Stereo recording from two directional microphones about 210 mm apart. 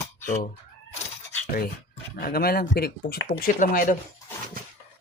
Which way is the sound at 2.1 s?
45° left (ahead or behind).